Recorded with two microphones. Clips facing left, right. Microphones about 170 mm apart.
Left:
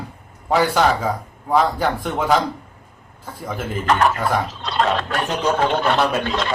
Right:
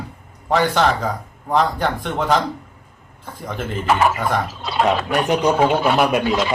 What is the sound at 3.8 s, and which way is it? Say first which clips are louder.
Speech: even; 5° right (ahead or behind).